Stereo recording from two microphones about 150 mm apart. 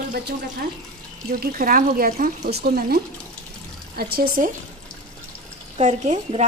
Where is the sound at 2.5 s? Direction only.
90° right.